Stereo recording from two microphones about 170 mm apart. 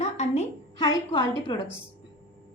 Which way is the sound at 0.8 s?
30° left (ahead or behind).